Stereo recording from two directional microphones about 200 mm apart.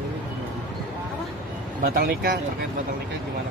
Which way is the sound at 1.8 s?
50° right (ahead or behind).